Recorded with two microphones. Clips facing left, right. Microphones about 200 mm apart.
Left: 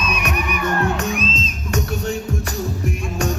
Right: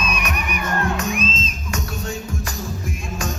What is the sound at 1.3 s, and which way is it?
Music, 35° left (ahead or behind).